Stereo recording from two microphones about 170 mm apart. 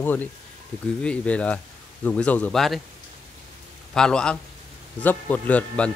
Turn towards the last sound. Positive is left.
turn(degrees=10)  # may be behind; listen again after turning